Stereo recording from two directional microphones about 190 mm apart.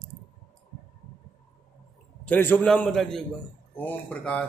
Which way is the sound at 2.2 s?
10° left (ahead or behind).